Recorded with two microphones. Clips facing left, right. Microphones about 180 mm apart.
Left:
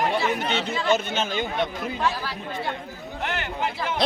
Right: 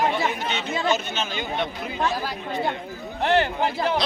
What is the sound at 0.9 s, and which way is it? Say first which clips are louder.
Speech: left 5 dB; 55° left (ahead or behind).